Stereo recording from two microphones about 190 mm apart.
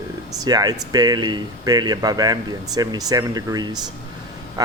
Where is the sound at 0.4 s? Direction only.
20° right (ahead or behind).